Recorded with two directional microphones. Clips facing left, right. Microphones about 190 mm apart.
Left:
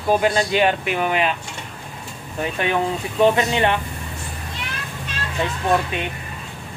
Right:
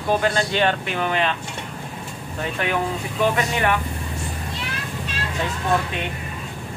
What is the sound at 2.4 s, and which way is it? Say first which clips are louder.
Speech: left 3 dB; 20° left (ahead or behind).